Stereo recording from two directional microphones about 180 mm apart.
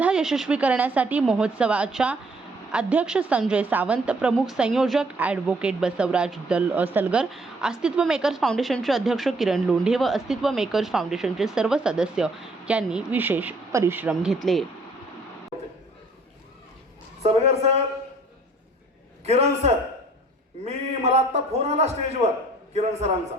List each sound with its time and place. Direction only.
0.0 s a woman's voice: 5° right (ahead or behind)
17.2 s a man's voice: 35° right (ahead or behind)
19.2 s a man's voice: 35° right (ahead or behind)